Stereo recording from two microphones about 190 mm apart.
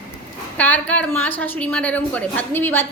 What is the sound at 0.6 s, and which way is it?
A woman's voice, 10° left (ahead or behind).